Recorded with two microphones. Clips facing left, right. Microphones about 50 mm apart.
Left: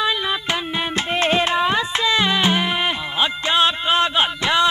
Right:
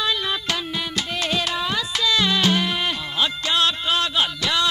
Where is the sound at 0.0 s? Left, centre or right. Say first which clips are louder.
Left 3 dB; centre.